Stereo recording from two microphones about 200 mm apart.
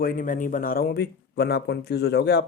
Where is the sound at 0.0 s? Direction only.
45° left (ahead or behind).